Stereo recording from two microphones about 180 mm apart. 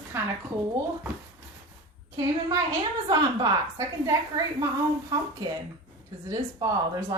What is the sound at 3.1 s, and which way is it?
Speech, 20° right (ahead or behind).